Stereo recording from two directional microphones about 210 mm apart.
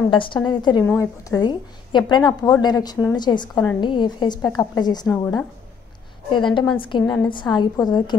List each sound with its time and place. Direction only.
0.1 s a woman's voice: 25° left (ahead or behind)
5.0 s a woman's voice: 10° left (ahead or behind)
6.3 s a woman's voice: 25° left (ahead or behind)